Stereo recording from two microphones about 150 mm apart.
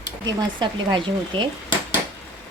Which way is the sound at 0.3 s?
30° right (ahead or behind).